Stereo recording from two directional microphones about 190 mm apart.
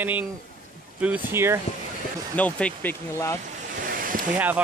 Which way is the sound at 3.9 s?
45° right (ahead or behind).